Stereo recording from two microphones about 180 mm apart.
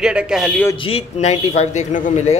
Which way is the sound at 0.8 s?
30° left (ahead or behind).